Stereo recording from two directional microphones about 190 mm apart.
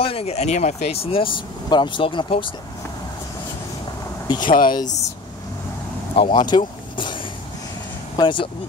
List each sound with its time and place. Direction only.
0.0 s speech: 30° left (ahead or behind)
4.5 s speech: 45° left (ahead or behind)
6.1 s speech: 25° left (ahead or behind)
8.2 s speech: 25° left (ahead or behind)